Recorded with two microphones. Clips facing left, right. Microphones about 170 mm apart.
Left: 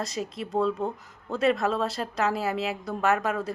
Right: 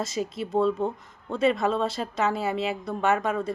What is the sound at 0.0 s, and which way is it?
Speech, centre (ahead or behind).